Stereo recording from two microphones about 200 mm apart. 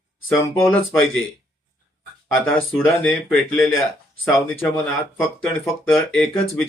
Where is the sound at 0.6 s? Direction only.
5° left (ahead or behind).